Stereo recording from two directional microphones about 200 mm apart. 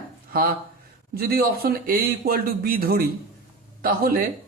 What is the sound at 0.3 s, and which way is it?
A man's voice, 50° right (ahead or behind).